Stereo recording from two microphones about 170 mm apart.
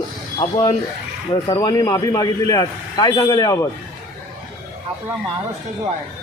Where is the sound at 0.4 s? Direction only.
45° left (ahead or behind).